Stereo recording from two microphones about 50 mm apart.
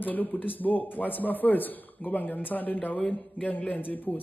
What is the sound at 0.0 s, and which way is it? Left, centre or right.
A man's voice, left.